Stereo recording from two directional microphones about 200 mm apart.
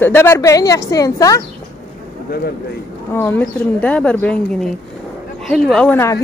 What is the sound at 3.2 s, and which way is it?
A woman's voice, 10° left (ahead or behind).